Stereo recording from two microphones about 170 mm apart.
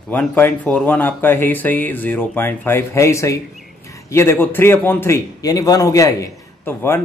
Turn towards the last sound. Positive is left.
turn(degrees=15)  # may be behind; listen again after turning